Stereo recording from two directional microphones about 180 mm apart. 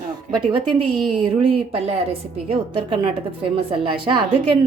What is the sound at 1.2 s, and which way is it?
A woman's voice, 30° right (ahead or behind).